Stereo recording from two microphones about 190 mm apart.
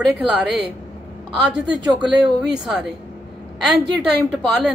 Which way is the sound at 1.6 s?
25° right (ahead or behind).